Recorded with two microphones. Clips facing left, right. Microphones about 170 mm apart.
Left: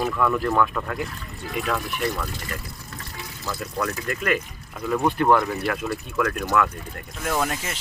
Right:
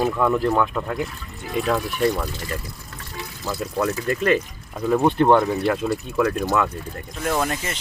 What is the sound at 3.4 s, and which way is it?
Speech, 25° right (ahead or behind).